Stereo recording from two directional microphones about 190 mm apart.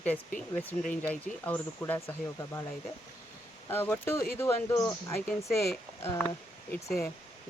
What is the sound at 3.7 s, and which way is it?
Speech, 10° left (ahead or behind).